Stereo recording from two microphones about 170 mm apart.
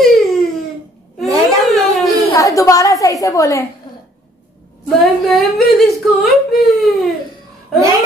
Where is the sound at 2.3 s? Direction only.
20° left (ahead or behind).